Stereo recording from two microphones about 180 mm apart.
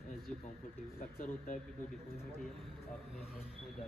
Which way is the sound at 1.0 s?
55° left (ahead or behind).